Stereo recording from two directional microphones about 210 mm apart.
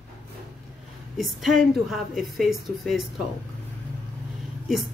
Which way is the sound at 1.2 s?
Centre (ahead or behind).